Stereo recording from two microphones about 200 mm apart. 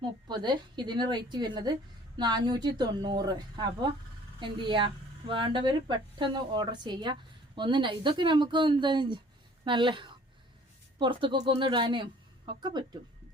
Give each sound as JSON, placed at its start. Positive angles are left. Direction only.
{"t": 0.3, "sound": "a woman's voice", "side_deg": -20}